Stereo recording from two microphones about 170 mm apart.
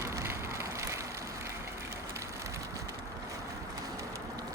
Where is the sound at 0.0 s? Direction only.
15° right (ahead or behind).